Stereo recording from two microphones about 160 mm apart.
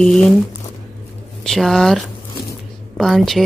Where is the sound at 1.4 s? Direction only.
Centre (ahead or behind).